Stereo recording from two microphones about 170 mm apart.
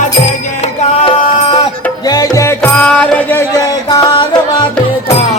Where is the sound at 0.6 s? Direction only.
30° left (ahead or behind); by 3.4 s 10° left (ahead or behind).